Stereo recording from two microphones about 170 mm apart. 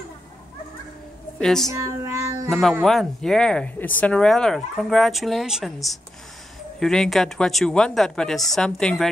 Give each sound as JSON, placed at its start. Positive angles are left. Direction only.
{"t": 1.4, "sound": "speech", "side_deg": 5}
{"t": 1.7, "sound": "child singing", "side_deg": -15}
{"t": 2.8, "sound": "speech", "side_deg": 0}